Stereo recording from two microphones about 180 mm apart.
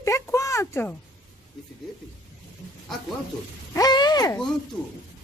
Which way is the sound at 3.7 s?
20° left (ahead or behind).